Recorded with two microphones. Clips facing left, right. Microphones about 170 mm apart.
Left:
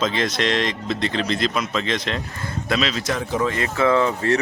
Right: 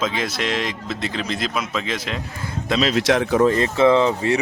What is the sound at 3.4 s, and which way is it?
Speech, 35° right (ahead or behind).